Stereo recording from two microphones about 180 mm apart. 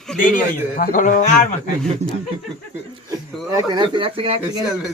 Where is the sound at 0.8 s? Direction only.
50° left (ahead or behind).